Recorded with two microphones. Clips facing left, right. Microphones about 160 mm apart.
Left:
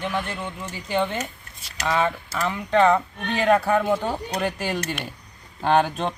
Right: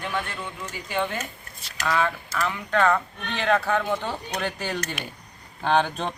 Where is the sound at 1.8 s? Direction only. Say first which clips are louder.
Left 2 dB; 20° left (ahead or behind).